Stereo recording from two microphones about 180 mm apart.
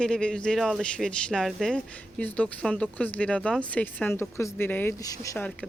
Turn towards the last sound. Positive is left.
turn(degrees=10)  # may be behind; listen again after turning